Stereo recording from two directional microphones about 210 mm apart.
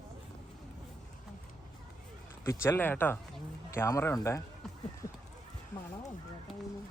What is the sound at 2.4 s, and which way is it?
Speech, 10° left (ahead or behind).